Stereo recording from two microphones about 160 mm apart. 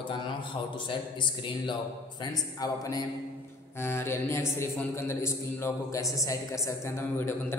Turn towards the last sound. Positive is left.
turn(degrees=15)  # may be behind; listen again after turning